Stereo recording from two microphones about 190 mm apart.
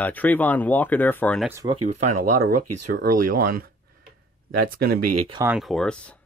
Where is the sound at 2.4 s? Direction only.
45° right (ahead or behind).